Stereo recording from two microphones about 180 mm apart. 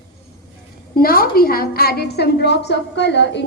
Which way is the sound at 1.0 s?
55° left (ahead or behind).